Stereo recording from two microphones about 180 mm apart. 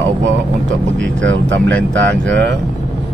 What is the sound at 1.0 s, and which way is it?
Speech, 90° right.